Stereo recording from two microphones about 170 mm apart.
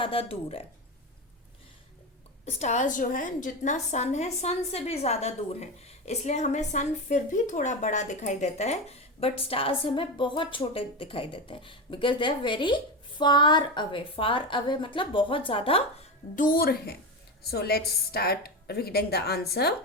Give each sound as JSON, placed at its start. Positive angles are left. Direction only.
{"t": 0.0, "sound": "a woman's voice", "side_deg": 35}
{"t": 2.5, "sound": "a woman's voice", "side_deg": 40}
{"t": 16.3, "sound": "a woman's voice", "side_deg": 55}